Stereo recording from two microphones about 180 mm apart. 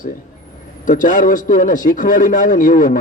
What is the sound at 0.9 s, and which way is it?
A man's voice, 45° left (ahead or behind).